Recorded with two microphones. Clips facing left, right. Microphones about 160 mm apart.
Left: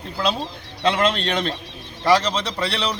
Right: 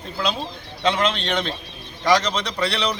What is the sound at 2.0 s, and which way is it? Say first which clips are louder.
Speech: left 1 dB; 10° left (ahead or behind).